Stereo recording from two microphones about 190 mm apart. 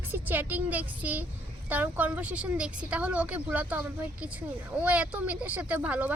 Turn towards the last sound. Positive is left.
turn(degrees=-10)  # may be behind; listen again after turning